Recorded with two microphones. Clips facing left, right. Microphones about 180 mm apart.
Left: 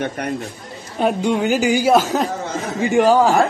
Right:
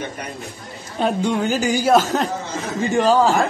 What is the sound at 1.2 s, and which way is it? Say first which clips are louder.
Speech: left 4 dB; 15° left (ahead or behind).